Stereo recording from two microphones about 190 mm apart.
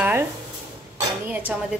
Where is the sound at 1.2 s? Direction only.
10° right (ahead or behind).